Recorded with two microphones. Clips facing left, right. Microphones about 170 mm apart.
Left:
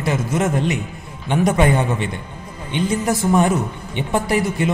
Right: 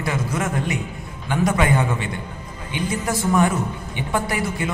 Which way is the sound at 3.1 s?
20° left (ahead or behind).